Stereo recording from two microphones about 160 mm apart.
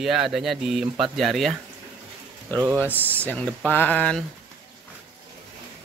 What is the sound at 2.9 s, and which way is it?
Speech, 10° right (ahead or behind).